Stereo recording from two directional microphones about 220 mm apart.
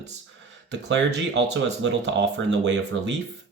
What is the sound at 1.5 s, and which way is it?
Speech, 50° right (ahead or behind).